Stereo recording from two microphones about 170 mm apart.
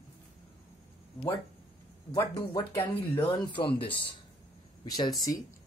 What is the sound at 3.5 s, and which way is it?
Speech, 30° left (ahead or behind).